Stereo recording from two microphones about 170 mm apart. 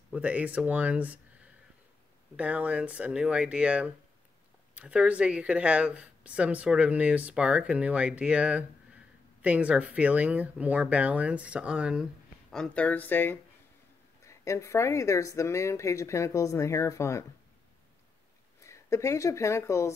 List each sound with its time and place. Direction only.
0.1 s speech: 10° right (ahead or behind); by 17.2 s 15° left (ahead or behind)
18.6 s speech: 15° left (ahead or behind)